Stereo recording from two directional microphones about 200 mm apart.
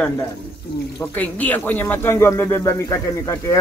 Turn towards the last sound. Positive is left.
turn(degrees=15)  # may be behind; listen again after turning